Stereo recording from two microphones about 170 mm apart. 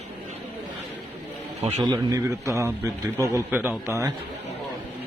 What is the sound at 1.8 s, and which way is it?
A man's voice, 20° right (ahead or behind).